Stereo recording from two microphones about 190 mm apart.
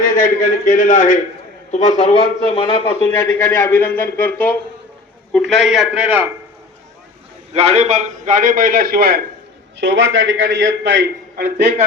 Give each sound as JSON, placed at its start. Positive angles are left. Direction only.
{"t": 0.0, "sound": "a man's voice", "side_deg": 45}
{"t": 3.2, "sound": "a man's voice", "side_deg": 15}
{"t": 7.5, "sound": "a man's voice", "side_deg": -35}
{"t": 9.7, "sound": "a man's voice", "side_deg": -70}